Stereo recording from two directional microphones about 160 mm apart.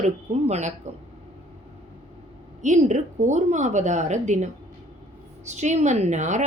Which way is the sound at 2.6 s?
50° right (ahead or behind).